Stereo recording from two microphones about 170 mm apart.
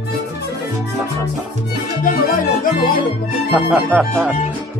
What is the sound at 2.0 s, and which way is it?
Music, 55° left (ahead or behind).